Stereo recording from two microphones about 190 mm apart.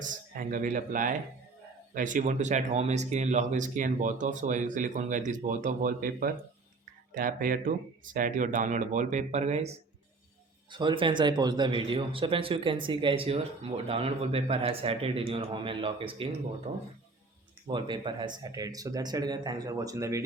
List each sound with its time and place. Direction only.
0.0 s speech: 45° right (ahead or behind)
10.7 s speech: 25° right (ahead or behind)
16.7 s speech: 40° right (ahead or behind)
17.7 s speech: 25° right (ahead or behind)